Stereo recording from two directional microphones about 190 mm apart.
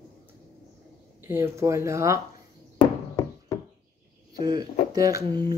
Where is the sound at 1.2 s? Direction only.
10° right (ahead or behind).